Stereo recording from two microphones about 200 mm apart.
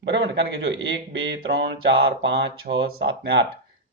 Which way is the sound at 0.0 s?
65° right (ahead or behind).